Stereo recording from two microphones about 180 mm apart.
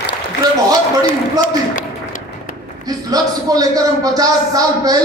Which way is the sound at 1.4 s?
50° left (ahead or behind).